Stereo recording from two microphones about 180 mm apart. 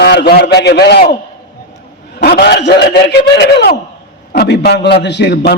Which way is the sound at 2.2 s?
60° left (ahead or behind).